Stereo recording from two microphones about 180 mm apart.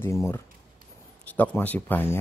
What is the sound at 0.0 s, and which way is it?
Speech, 15° left (ahead or behind).